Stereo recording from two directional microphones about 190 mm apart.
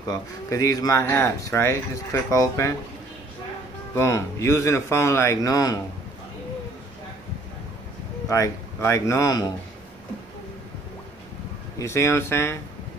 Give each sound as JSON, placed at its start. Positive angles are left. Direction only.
{"t": 0.1, "sound": "speech", "side_deg": 20}
{"t": 3.9, "sound": "speech", "side_deg": 15}
{"t": 8.3, "sound": "speech", "side_deg": 15}
{"t": 11.8, "sound": "speech", "side_deg": 15}